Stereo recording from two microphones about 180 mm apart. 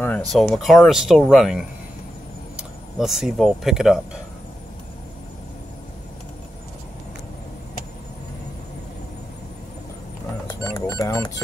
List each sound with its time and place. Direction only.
0.0 s speech: 5° left (ahead or behind)
10.6 s music: 15° left (ahead or behind)